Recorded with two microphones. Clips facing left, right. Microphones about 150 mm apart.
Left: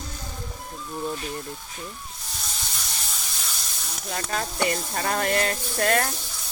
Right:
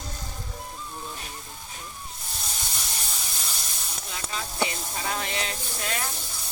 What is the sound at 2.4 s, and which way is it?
Hiss, 5° right (ahead or behind).